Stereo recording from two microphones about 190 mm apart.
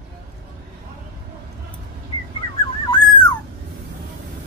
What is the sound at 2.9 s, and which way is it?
Dog, 25° left (ahead or behind).